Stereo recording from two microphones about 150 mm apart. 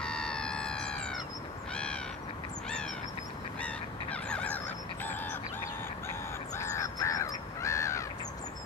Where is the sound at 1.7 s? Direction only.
5° left (ahead or behind).